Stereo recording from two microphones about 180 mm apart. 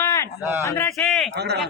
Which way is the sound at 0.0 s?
15° left (ahead or behind).